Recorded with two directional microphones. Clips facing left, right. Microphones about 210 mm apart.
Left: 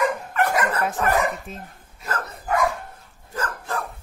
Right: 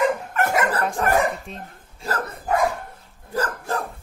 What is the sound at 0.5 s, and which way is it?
Dog, 25° right (ahead or behind).